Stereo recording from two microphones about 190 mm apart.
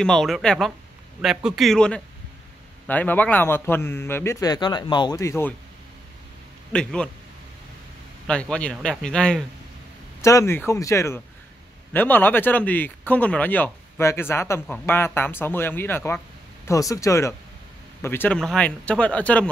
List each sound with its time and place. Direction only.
0.0 s speech: centre (ahead or behind)
6.7 s speech: 5° left (ahead or behind)
8.3 s speech: 5° left (ahead or behind)
10.2 s speech: 15° left (ahead or behind)